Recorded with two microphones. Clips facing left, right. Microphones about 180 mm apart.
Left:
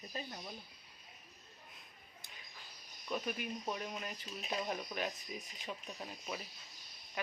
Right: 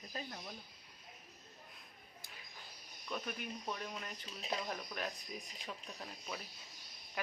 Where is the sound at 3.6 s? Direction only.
15° left (ahead or behind).